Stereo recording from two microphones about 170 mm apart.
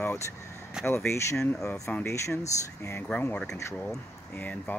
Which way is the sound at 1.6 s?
15° left (ahead or behind).